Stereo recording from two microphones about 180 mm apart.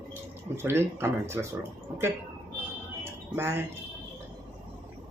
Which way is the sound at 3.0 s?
15° right (ahead or behind).